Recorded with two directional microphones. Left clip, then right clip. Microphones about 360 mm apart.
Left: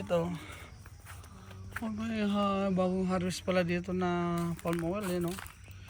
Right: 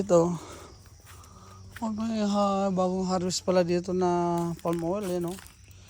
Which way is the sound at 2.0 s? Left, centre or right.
Centre.